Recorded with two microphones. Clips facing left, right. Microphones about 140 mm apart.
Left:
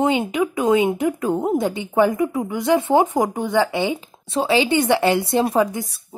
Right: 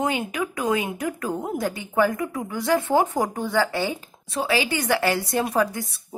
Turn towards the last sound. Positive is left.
turn(degrees=20)  # may be behind; listen again after turning